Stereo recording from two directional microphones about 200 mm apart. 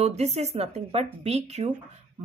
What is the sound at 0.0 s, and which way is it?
Speech, 35° right (ahead or behind).